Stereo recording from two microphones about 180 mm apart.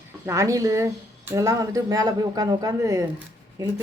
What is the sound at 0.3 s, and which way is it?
A woman's voice, 15° right (ahead or behind).